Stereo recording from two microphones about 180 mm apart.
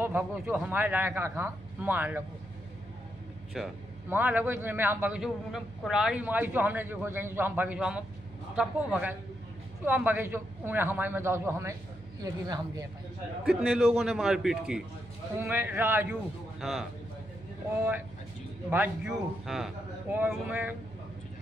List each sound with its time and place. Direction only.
0.0 s a man's voice: 10° right (ahead or behind)
3.5 s a man's voice: 5° right (ahead or behind)
13.6 s a man's voice: centre (ahead or behind)
16.6 s a man's voice: centre (ahead or behind)
18.7 s a man's voice: 5° right (ahead or behind)